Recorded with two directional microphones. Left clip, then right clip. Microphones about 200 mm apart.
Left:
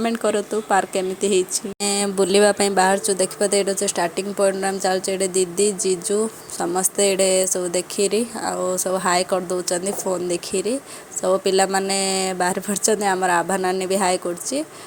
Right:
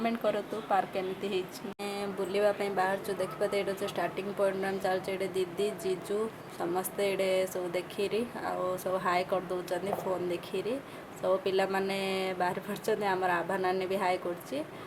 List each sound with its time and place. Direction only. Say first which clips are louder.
0.0 s speech: left 9 dB; 35° left (ahead or behind)